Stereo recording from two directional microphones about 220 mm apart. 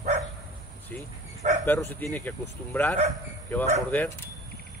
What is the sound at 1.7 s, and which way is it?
Speech, 10° left (ahead or behind).